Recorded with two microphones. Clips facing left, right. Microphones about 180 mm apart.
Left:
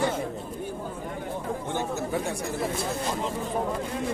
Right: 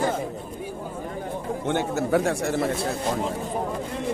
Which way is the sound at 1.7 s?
75° right (ahead or behind).